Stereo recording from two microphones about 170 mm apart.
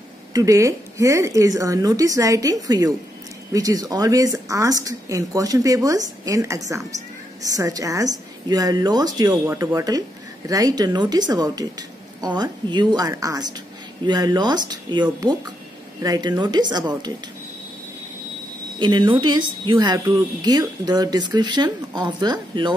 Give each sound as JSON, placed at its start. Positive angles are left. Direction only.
{"t": 0.3, "sound": "speech", "side_deg": -20}
{"t": 18.8, "sound": "speech", "side_deg": -30}